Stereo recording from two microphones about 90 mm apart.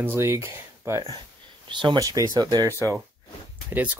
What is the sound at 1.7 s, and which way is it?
Speech, 60° right (ahead or behind).